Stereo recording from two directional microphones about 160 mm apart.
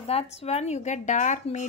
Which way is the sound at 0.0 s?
40° left (ahead or behind).